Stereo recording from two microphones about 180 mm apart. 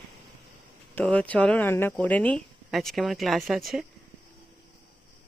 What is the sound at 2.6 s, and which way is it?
Speech, centre (ahead or behind).